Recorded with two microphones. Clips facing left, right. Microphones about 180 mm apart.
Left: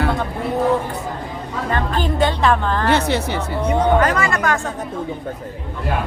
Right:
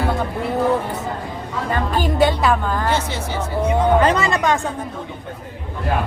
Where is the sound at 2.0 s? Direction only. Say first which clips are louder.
Right 2 dB; 10° right (ahead or behind).